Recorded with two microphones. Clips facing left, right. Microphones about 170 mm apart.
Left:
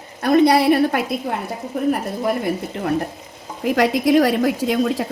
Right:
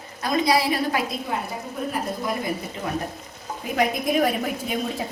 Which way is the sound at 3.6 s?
85° left.